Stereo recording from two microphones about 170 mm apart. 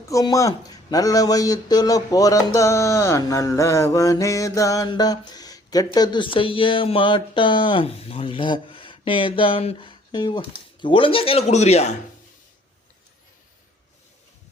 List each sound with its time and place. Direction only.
0.1 s a man's voice: 20° left (ahead or behind); by 11.9 s 40° left (ahead or behind)